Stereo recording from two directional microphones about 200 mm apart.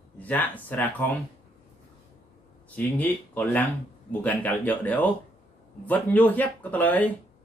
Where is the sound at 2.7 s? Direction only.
10° left (ahead or behind).